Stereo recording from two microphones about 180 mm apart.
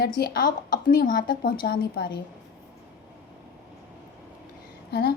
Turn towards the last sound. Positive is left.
turn(degrees=60)  # may be behind; listen again after turning